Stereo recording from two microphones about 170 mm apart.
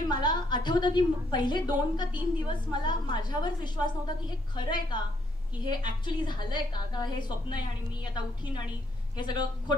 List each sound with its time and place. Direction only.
0.1 s a woman's voice: 25° left (ahead or behind)
9.1 s a woman's voice: 25° left (ahead or behind)